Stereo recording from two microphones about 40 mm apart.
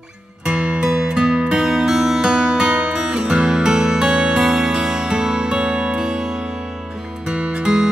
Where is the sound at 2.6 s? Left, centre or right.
Right.